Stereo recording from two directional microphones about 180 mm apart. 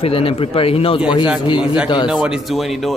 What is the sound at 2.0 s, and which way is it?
Speech, 5° right (ahead or behind).